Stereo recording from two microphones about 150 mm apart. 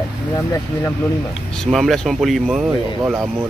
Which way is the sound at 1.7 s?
Centre (ahead or behind).